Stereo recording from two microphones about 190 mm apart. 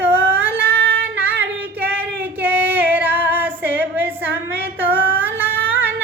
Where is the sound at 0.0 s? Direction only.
10° right (ahead or behind).